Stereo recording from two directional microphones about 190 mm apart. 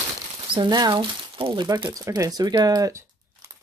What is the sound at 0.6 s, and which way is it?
Speech, 20° right (ahead or behind).